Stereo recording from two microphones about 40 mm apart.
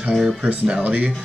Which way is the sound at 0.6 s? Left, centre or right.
Right.